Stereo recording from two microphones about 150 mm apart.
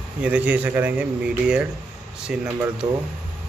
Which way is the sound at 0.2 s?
10° right (ahead or behind).